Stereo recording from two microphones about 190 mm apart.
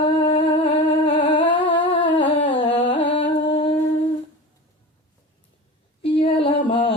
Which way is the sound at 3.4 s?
30° left (ahead or behind).